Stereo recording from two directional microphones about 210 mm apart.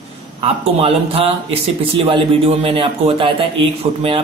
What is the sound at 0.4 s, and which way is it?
Speech, 30° right (ahead or behind).